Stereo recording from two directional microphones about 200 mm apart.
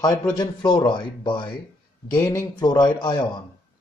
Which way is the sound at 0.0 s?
20° left (ahead or behind).